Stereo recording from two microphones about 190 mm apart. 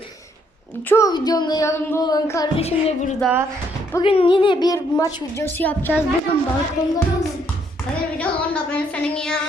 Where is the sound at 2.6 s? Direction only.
35° left (ahead or behind).